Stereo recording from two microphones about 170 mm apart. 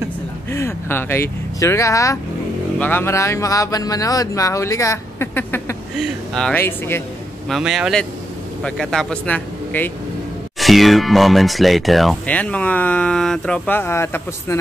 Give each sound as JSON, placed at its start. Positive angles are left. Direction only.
{"t": 0.5, "sound": "speech", "side_deg": 15}
{"t": 7.4, "sound": "speech", "side_deg": 0}